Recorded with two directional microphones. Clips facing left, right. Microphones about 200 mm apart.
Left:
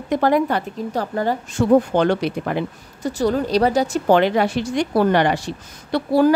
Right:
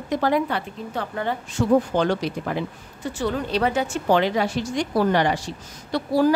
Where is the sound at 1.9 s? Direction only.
60° left (ahead or behind).